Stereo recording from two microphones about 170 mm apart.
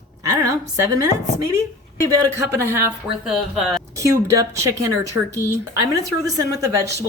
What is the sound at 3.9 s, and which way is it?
A woman's voice, 20° right (ahead or behind).